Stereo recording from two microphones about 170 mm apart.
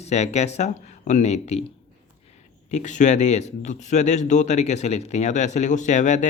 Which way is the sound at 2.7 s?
45° left (ahead or behind).